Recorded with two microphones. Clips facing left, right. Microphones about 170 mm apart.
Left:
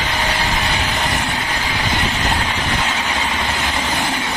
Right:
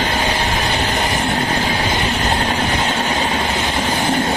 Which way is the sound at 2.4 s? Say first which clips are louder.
Right 3 dB; 45° right (ahead or behind).